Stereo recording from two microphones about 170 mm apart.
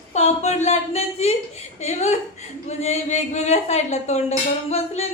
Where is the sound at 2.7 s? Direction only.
40° left (ahead or behind).